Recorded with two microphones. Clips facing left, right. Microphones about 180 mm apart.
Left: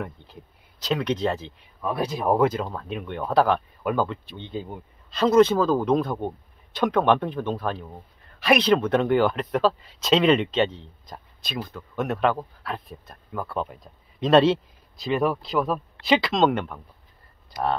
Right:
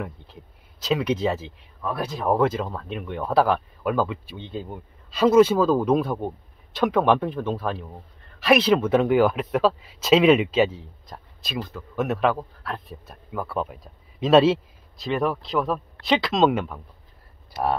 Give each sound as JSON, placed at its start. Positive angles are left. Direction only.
{"t": 0.0, "sound": "speech", "side_deg": 0}
{"t": 1.8, "sound": "speech", "side_deg": 15}